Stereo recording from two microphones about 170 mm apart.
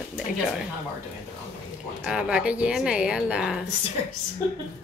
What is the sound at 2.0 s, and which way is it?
A woman's voice, 5° right (ahead or behind).